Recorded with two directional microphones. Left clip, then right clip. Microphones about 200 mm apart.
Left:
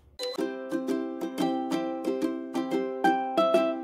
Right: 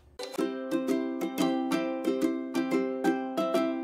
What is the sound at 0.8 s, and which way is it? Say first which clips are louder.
Music: right 1 dB; 15° left (ahead or behind).